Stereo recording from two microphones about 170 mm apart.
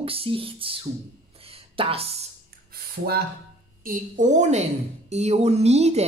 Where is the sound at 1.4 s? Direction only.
35° right (ahead or behind).